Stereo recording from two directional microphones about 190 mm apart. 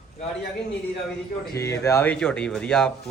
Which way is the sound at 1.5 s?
15° left (ahead or behind).